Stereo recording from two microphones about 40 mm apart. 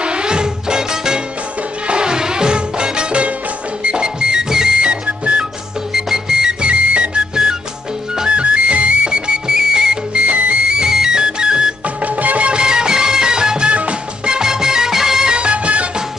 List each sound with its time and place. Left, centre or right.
0.0 s music: right
5.0 s music: right
6.0 s music: centre
6.6 s whistle: right
8.4 s music: right
9.0 s whistle: centre
10.7 s music: centre
12.0 s music: right
12.5 s music: centre
13.7 s music: right
14.3 s music: centre
15.3 s music: right